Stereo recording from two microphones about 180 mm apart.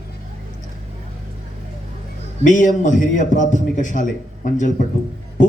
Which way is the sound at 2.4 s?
45° left (ahead or behind).